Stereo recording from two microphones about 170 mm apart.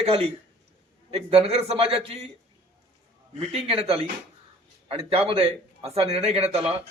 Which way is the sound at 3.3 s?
35° right (ahead or behind).